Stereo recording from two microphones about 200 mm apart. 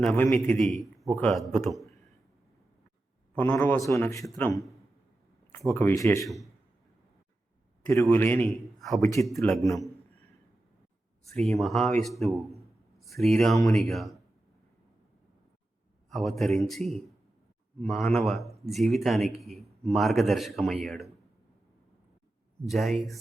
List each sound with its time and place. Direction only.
0.0 s a man's voice: 5° left (ahead or behind)
3.3 s a man's voice: 10° left (ahead or behind)
5.7 s a man's voice: 15° left (ahead or behind)
6.2 s a man's voice: centre (ahead or behind)
8.1 s a man's voice: 10° left (ahead or behind)
9.0 s a man's voice: 15° left (ahead or behind)
11.3 s a man's voice: centre (ahead or behind)
16.0 s a man's voice: centre (ahead or behind)
22.6 s a man's voice: centre (ahead or behind)